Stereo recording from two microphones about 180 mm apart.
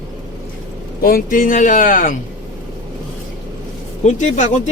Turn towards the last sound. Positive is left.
turn(degrees=40)  # may be behind; listen again after turning